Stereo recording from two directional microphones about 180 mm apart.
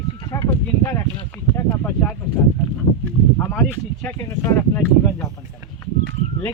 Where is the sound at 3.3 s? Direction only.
10° left (ahead or behind).